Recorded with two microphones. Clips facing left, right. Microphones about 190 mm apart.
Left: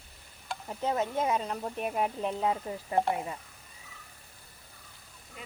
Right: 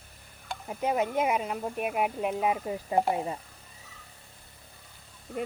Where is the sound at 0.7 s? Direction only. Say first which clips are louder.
Right 3 dB; 15° right (ahead or behind).